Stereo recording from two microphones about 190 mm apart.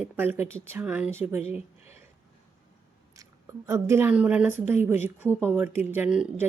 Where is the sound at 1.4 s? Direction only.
35° left (ahead or behind).